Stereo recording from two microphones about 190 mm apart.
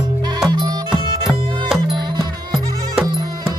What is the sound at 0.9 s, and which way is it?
Music, centre (ahead or behind).